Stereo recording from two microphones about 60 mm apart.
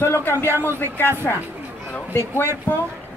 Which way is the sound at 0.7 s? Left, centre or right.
Left.